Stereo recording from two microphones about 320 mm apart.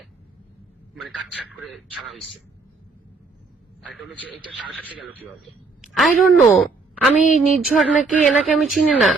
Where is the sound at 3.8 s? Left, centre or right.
Centre.